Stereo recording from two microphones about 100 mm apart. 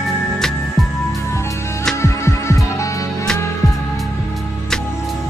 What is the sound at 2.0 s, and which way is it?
Music, 30° left (ahead or behind).